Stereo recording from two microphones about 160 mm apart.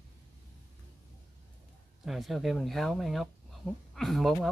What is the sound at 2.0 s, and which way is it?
Speech, centre (ahead or behind).